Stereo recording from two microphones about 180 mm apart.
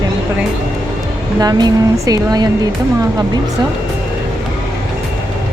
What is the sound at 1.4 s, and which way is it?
Speech, 20° right (ahead or behind).